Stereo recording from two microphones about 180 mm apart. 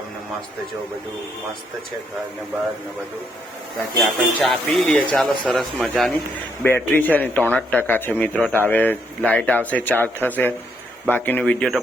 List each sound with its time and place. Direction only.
3.8 s a man's voice: centre (ahead or behind)